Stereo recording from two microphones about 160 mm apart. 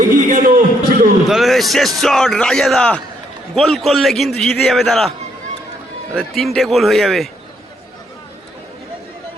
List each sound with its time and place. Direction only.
0.0 s a sound: 55° right (ahead or behind)
1.3 s a man's voice: centre (ahead or behind)
6.1 s a man's voice: centre (ahead or behind)